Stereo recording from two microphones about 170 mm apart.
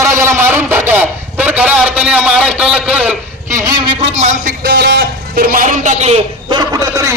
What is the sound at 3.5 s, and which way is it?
Speech, 25° right (ahead or behind).